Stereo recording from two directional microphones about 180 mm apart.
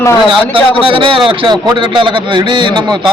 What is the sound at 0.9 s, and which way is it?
A man's voice, 30° right (ahead or behind).